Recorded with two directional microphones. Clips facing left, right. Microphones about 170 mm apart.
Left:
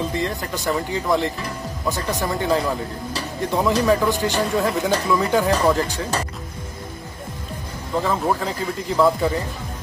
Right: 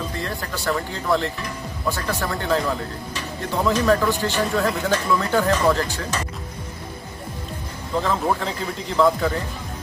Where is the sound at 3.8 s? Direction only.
15° left (ahead or behind).